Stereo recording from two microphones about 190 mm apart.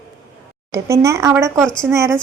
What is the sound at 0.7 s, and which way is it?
Speech, 15° right (ahead or behind).